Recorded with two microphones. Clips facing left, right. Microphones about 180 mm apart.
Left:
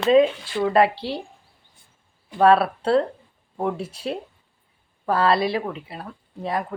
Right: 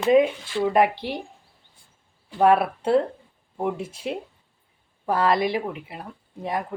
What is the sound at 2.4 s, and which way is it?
Speech, 15° right (ahead or behind).